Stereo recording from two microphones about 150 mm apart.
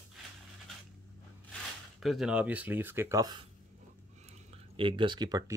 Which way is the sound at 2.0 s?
Centre (ahead or behind).